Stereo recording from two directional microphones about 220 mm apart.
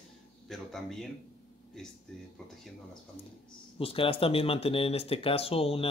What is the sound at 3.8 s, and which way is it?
Speech, 25° left (ahead or behind).